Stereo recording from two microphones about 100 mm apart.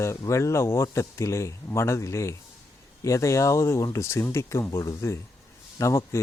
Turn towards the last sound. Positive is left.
turn(degrees=30)  # may be behind; listen again after turning